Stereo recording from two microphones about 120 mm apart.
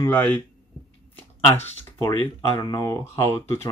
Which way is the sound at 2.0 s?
30° left (ahead or behind).